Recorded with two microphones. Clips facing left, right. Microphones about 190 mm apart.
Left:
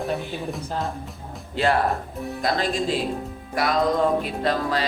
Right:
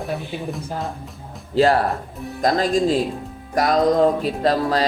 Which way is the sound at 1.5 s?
35° right (ahead or behind).